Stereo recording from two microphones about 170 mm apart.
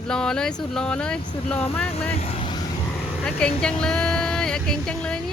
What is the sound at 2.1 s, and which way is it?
Vehicle, 35° left (ahead or behind).